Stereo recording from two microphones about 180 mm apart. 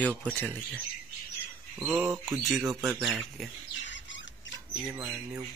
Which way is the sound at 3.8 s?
90° left.